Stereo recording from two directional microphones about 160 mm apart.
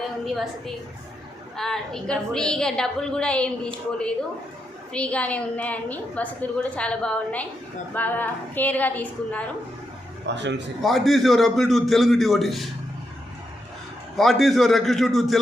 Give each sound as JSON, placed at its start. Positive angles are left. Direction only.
{"t": 0.3, "sound": "a woman's voice", "side_deg": 0}
{"t": 4.9, "sound": "a woman's voice", "side_deg": 5}
{"t": 10.2, "sound": "a man's voice", "side_deg": -90}
{"t": 10.8, "sound": "a woman's voice", "side_deg": 0}
{"t": 14.2, "sound": "a woman's voice", "side_deg": 0}